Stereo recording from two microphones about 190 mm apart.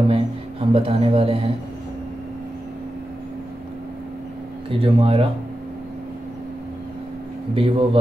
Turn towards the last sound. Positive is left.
turn(degrees=-30)  # may be behind; listen again after turning